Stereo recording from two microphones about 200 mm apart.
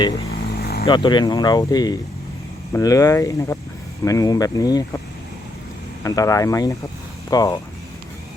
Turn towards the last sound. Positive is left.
turn(degrees=20)  # may be behind; listen again after turning